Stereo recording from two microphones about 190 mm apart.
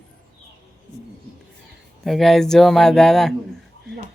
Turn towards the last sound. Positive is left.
turn(degrees=0)  # may be behind; listen again after turning